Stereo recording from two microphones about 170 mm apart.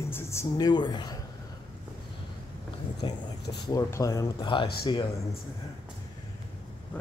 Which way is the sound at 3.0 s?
25° left (ahead or behind).